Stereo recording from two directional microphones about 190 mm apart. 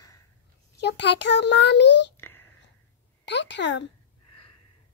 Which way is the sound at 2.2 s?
10° left (ahead or behind).